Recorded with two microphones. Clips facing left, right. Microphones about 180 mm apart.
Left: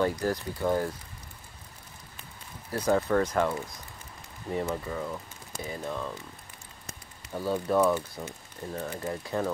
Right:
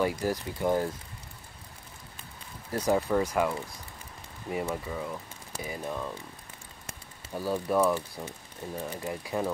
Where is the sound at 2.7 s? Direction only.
15° right (ahead or behind).